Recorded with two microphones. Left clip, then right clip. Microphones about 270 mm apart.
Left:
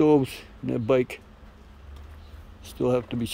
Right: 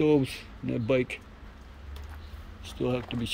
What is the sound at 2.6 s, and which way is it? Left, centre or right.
Speech, centre.